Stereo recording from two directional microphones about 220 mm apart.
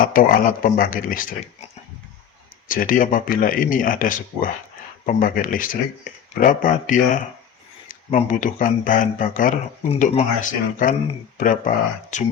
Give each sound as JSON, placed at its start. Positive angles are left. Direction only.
{"t": 0.0, "sound": "speech", "side_deg": 40}
{"t": 2.6, "sound": "speech", "side_deg": 40}